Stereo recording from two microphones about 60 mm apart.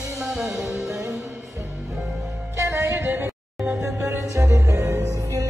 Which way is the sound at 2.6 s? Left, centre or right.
Right.